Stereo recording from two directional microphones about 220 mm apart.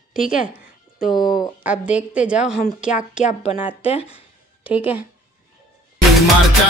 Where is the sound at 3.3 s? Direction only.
30° left (ahead or behind).